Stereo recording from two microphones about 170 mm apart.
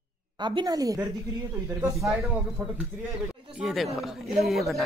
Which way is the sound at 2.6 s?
15° right (ahead or behind).